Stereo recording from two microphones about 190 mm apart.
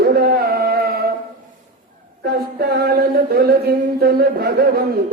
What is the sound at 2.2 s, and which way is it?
A man's voice, 55° right (ahead or behind).